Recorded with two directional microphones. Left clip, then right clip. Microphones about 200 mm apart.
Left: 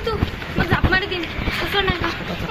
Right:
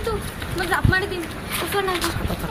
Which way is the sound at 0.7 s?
10° right (ahead or behind).